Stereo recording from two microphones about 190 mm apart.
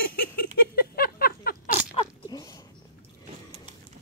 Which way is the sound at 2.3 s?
20° left (ahead or behind).